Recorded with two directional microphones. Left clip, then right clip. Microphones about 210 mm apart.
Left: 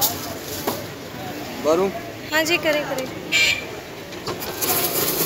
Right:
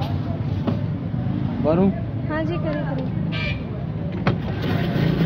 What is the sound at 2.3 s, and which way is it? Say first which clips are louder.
Speech: left 7 dB; 15° left (ahead or behind).